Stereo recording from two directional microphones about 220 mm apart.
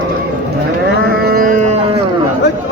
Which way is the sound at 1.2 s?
45° right (ahead or behind).